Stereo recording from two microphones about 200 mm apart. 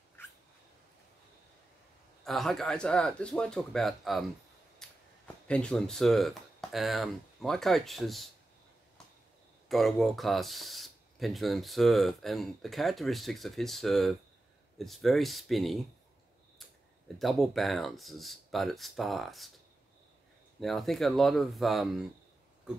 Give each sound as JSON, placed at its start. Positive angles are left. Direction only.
{"t": 2.2, "sound": "speech", "side_deg": 0}
{"t": 4.8, "sound": "a sound", "side_deg": 0}
{"t": 5.5, "sound": "speech", "side_deg": 5}
{"t": 9.7, "sound": "speech", "side_deg": 0}
{"t": 17.2, "sound": "speech", "side_deg": 0}
{"t": 20.6, "sound": "speech", "side_deg": 0}